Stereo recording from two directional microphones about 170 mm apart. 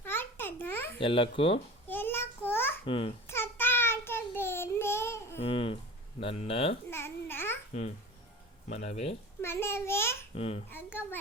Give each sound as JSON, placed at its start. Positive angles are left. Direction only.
{"t": 0.0, "sound": "babbling", "side_deg": 10}
{"t": 0.9, "sound": "a child's voice", "side_deg": 30}
{"t": 1.9, "sound": "a sound", "side_deg": 15}
{"t": 2.8, "sound": "a child's voice", "side_deg": 35}
{"t": 3.2, "sound": "child singing", "side_deg": 15}
{"t": 5.4, "sound": "speech", "side_deg": 35}
{"t": 6.9, "sound": "babbling", "side_deg": 15}
{"t": 7.7, "sound": "a child's voice", "side_deg": 45}
{"t": 9.4, "sound": "a child's voice", "side_deg": 15}
{"t": 10.3, "sound": "a child's voice", "side_deg": 35}
{"t": 10.7, "sound": "a child's voice", "side_deg": 10}